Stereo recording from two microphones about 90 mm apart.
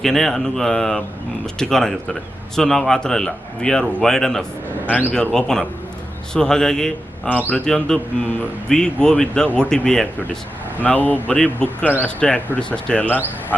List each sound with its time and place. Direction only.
0.0 s a man's voice: 5° left (ahead or behind)
4.9 s a man's voice: 20° left (ahead or behind)
5.1 s speech: 10° left (ahead or behind)
10.8 s speech: 20° left (ahead or behind)